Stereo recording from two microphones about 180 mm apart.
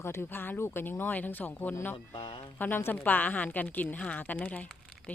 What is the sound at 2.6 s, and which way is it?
Speech, 10° left (ahead or behind).